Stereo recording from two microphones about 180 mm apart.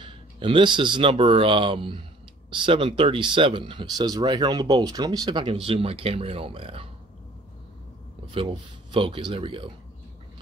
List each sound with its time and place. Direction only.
0.0 s speech: 25° right (ahead or behind)
8.3 s speech: 30° right (ahead or behind)